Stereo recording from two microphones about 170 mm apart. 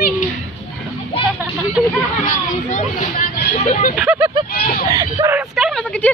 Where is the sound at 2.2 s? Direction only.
45° left (ahead or behind).